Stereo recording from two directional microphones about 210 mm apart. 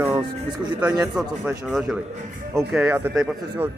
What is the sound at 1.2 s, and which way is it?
A man's voice, 5° right (ahead or behind).